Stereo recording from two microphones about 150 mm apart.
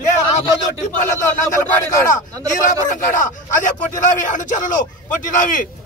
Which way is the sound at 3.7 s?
55° left (ahead or behind).